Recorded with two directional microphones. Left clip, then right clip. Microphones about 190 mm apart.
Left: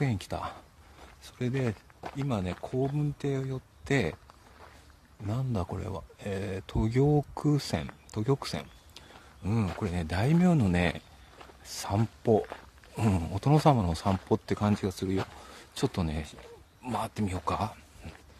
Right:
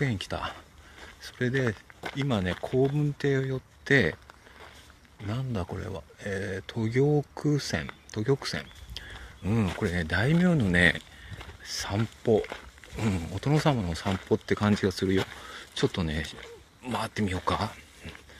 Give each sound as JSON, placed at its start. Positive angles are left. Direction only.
{"t": 0.0, "sound": "speech", "side_deg": 10}
{"t": 2.0, "sound": "a sound", "side_deg": -60}
{"t": 2.2, "sound": "speech", "side_deg": -5}
{"t": 5.2, "sound": "speech", "side_deg": 15}
{"t": 8.9, "sound": "a sound", "side_deg": 0}
{"t": 9.8, "sound": "speech", "side_deg": 5}
{"t": 12.9, "sound": "speech", "side_deg": 30}
{"t": 13.3, "sound": "speech", "side_deg": 20}
{"t": 14.6, "sound": "speech", "side_deg": 0}
{"t": 15.5, "sound": "speech", "side_deg": 10}